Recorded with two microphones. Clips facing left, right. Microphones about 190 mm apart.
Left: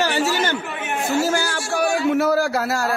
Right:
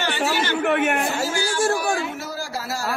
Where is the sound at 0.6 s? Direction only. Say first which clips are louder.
Right 8 dB; 65° right (ahead or behind).